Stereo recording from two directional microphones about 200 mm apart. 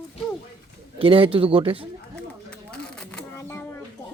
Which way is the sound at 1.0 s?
25° right (ahead or behind).